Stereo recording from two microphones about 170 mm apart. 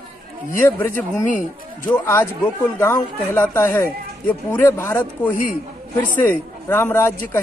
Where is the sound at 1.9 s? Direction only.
10° left (ahead or behind).